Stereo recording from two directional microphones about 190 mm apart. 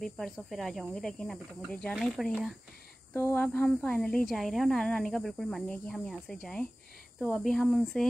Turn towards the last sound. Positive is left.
turn(degrees=0)  # may be behind; listen again after turning